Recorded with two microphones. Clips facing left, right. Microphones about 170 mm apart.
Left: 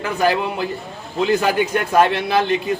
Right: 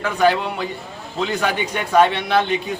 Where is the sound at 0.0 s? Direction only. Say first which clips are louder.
Right 1 dB; 5° left (ahead or behind).